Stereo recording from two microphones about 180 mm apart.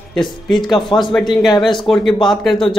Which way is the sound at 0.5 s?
25° left (ahead or behind).